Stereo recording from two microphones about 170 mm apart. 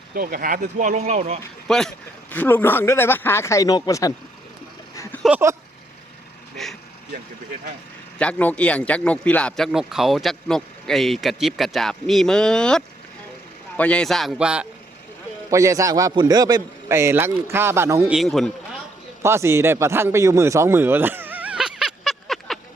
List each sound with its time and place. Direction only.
0.1 s speech: 60° right (ahead or behind); by 1.4 s 40° right (ahead or behind)
1.6 s speech: 5° left (ahead or behind); by 4.1 s 20° left (ahead or behind)
5.1 s a sound: 10° left (ahead or behind)
8.2 s speech: 10° left (ahead or behind)
15.4 s a man's voice: 20° right (ahead or behind)
18.1 s speech: centre (ahead or behind)
19.2 s a sound: 15° right (ahead or behind); by 22.5 s centre (ahead or behind)